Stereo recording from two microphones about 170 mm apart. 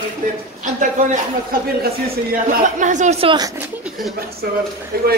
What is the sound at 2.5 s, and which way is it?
Speech, 45° right (ahead or behind).